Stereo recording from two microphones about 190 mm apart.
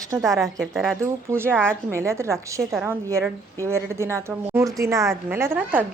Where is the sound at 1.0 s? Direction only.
10° right (ahead or behind).